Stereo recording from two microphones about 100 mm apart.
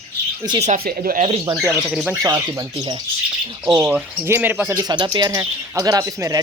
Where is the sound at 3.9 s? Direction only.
20° right (ahead or behind).